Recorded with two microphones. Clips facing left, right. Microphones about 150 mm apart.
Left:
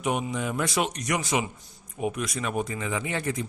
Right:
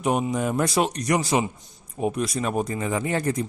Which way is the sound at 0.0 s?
35° right (ahead or behind).